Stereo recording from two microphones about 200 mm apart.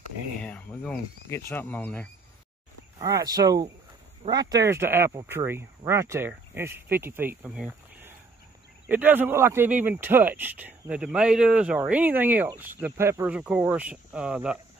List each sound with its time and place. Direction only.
0.4 s speech: 5° left (ahead or behind)
3.0 s speech: 15° right (ahead or behind)